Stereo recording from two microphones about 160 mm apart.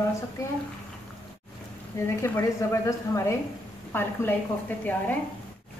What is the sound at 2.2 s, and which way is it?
A woman's voice, 15° left (ahead or behind).